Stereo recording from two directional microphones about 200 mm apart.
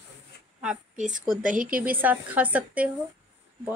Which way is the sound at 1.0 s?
40° right (ahead or behind).